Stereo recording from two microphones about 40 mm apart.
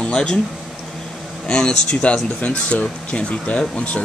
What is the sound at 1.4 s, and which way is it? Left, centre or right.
Speech, centre.